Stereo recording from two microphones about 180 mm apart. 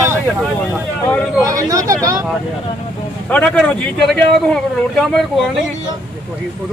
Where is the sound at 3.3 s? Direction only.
5° left (ahead or behind).